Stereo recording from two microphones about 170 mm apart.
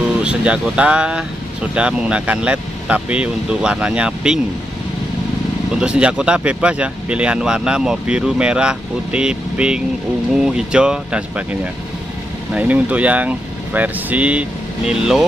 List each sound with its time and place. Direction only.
0.2 s speech: 5° right (ahead or behind)
5.8 s speech: 5° right (ahead or behind)